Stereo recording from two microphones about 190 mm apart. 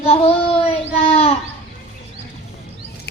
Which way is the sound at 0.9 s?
30° left (ahead or behind).